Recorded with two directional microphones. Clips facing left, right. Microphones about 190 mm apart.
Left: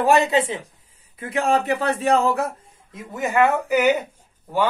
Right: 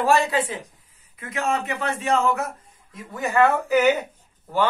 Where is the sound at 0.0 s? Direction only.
20° left (ahead or behind).